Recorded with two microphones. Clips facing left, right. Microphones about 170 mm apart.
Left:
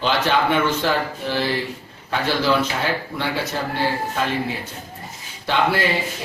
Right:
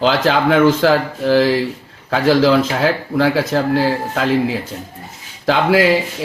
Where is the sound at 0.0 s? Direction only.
90° right.